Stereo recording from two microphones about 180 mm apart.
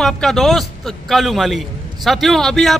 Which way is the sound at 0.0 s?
Centre (ahead or behind).